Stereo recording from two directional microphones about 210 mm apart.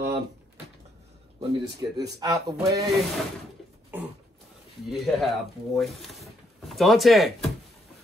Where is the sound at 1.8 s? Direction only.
10° right (ahead or behind).